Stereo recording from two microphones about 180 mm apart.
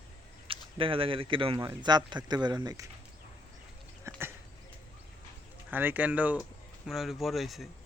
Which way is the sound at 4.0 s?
10° right (ahead or behind).